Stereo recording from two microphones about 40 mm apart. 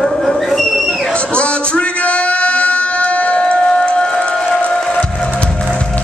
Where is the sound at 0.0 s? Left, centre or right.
Centre.